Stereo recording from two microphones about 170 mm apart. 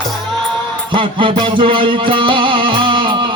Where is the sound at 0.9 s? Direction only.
30° right (ahead or behind).